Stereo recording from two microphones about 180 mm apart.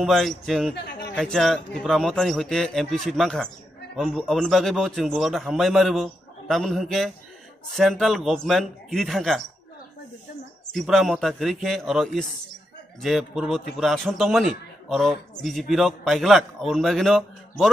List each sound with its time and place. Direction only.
0.0 s a man's voice: centre (ahead or behind)
0.7 s a sound: 70° left (ahead or behind)
1.1 s a man's voice: 5° left (ahead or behind)
10.7 s a man's voice: centre (ahead or behind)